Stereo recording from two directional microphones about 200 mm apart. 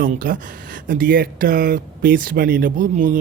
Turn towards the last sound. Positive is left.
turn(degrees=-40)  # may be behind; listen again after turning